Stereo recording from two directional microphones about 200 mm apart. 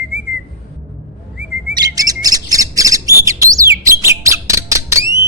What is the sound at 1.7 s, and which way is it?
Bird, 20° right (ahead or behind).